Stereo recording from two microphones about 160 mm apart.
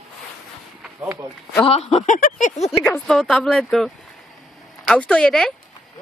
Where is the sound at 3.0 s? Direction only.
5° left (ahead or behind).